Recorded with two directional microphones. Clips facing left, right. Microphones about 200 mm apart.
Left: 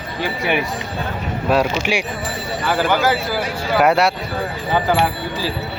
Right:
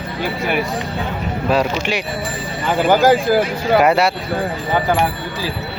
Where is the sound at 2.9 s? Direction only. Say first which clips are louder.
Right 6 dB; 45° right (ahead or behind).